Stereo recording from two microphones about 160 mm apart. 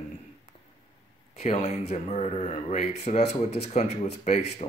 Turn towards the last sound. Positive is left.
turn(degrees=45)  # may be behind; listen again after turning